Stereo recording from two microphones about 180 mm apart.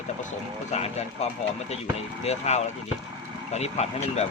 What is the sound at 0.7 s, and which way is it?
Speech, 35° left (ahead or behind).